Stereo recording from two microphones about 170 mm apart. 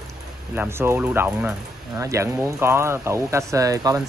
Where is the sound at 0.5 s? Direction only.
15° right (ahead or behind).